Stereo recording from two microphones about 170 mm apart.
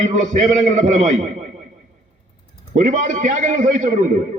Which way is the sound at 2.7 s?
45° right (ahead or behind).